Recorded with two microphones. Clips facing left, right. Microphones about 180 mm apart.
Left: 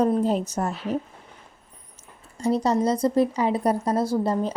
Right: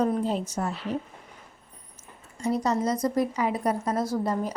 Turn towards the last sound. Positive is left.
turn(degrees=30)  # may be behind; listen again after turning